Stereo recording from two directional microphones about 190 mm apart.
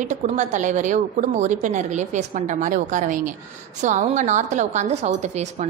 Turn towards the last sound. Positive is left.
turn(degrees=-35)  # may be behind; listen again after turning